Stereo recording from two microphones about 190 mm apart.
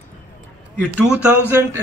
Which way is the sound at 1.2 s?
10° right (ahead or behind).